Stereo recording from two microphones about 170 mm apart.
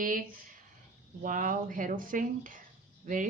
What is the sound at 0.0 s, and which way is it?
A woman's voice, 55° right (ahead or behind).